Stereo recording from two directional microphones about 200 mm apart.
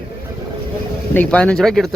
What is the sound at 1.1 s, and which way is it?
Speech, 5° left (ahead or behind).